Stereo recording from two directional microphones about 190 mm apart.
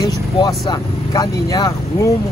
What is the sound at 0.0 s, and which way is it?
Vehicle, 20° left (ahead or behind).